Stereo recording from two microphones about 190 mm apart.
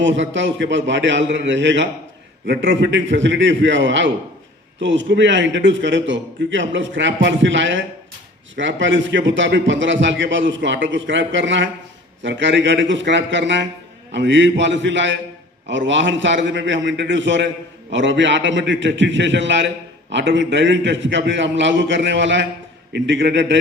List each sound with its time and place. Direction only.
0.0 s a man's voice: 75° right (ahead or behind)